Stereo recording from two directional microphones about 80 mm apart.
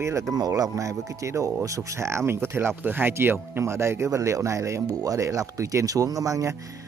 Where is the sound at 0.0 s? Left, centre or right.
Right.